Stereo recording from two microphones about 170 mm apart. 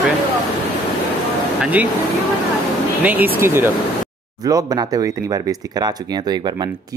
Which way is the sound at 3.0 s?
10° right (ahead or behind).